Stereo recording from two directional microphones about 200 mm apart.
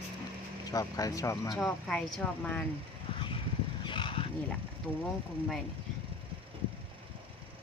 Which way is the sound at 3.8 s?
25° left (ahead or behind).